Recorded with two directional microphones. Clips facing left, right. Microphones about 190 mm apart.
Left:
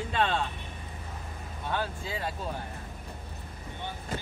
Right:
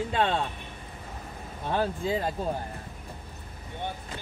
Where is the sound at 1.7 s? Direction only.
40° right (ahead or behind).